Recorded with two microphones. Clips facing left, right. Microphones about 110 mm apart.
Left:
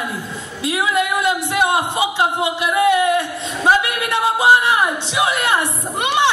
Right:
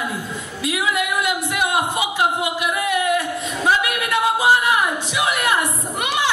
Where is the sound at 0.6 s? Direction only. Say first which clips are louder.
Left 3 dB; 30° left (ahead or behind).